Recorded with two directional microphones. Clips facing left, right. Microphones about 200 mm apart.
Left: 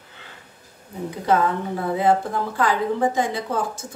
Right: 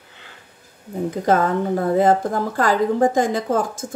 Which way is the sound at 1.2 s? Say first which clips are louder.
Right 2 dB; 45° right (ahead or behind).